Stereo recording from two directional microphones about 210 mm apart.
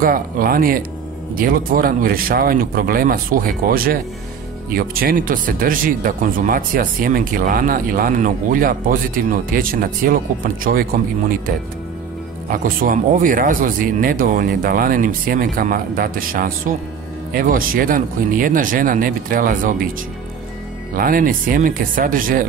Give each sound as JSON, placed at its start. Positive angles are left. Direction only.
{"t": 0.0, "sound": "speech", "side_deg": -40}
{"t": 12.4, "sound": "speech", "side_deg": -40}
{"t": 20.9, "sound": "speech", "side_deg": -40}